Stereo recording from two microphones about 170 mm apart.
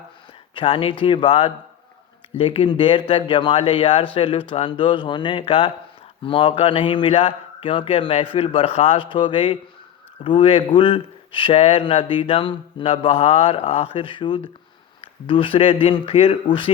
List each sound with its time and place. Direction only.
0.5 s speech: 30° left (ahead or behind)